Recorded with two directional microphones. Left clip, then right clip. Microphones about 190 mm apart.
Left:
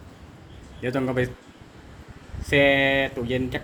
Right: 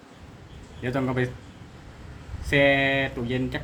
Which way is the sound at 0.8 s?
5° left (ahead or behind).